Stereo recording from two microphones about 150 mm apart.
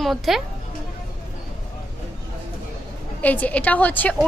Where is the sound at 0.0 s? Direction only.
Centre (ahead or behind).